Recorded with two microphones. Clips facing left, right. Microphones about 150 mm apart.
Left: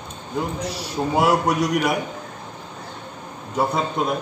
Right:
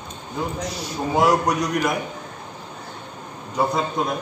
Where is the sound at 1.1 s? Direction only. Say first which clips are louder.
Even; 5° left (ahead or behind).